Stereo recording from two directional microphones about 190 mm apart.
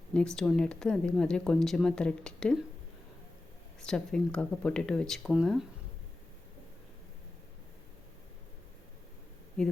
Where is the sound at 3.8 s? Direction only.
5° left (ahead or behind).